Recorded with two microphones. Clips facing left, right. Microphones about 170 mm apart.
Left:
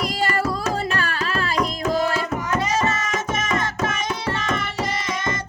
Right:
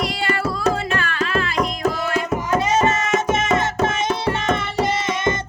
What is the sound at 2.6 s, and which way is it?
Music, 25° right (ahead or behind).